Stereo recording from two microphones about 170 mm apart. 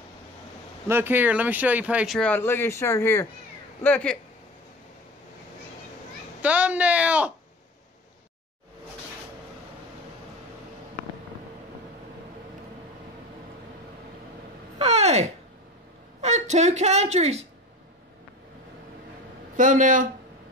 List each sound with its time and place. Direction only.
0.8 s speech: 15° right (ahead or behind)
2.1 s speech: 10° left (ahead or behind)
6.4 s speech: 10° right (ahead or behind)
14.8 s a sound: 40° right (ahead or behind)
16.2 s a woman's voice: 40° right (ahead or behind)
19.5 s speech: 50° right (ahead or behind)